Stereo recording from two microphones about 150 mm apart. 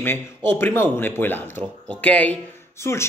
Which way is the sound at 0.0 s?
15° left (ahead or behind).